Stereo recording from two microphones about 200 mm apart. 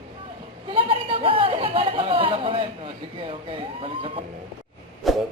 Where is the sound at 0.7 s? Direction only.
25° right (ahead or behind).